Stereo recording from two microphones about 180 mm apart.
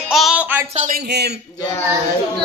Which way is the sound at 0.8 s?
60° right (ahead or behind).